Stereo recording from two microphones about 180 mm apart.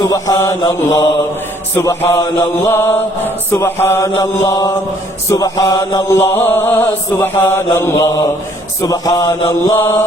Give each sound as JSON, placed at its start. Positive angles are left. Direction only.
{"t": 0.0, "sound": "mantra", "side_deg": 20}